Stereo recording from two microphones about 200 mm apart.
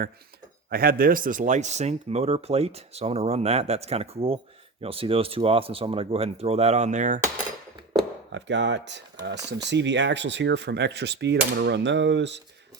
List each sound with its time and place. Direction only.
0.7 s speech: 50° right (ahead or behind)
7.9 s speech: 65° right (ahead or behind)